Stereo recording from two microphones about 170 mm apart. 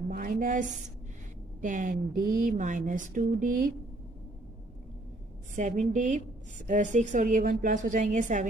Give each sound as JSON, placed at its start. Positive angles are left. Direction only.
{"t": 0.1, "sound": "a woman's voice", "side_deg": -55}
{"t": 5.6, "sound": "speech", "side_deg": -45}